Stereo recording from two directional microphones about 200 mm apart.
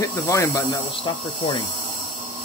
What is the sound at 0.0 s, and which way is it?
Speech, 15° left (ahead or behind).